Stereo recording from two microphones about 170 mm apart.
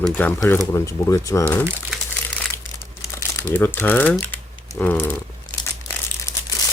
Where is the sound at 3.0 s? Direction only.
15° left (ahead or behind).